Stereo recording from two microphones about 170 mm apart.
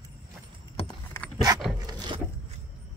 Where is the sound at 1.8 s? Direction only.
25° right (ahead or behind).